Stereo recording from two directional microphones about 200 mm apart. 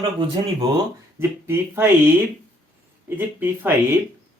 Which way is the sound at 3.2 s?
10° right (ahead or behind).